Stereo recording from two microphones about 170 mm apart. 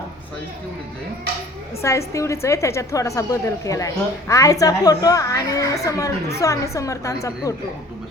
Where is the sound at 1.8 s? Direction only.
15° left (ahead or behind).